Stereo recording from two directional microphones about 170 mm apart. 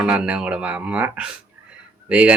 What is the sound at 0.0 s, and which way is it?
Speech, 5° right (ahead or behind).